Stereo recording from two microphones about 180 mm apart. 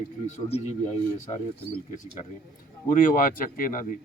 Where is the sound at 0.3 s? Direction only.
35° left (ahead or behind).